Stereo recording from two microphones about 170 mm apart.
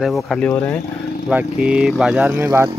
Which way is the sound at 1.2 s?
5° right (ahead or behind).